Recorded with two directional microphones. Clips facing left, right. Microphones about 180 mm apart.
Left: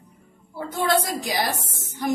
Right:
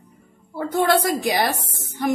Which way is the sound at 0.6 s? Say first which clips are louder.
Right 4 dB; 60° right (ahead or behind).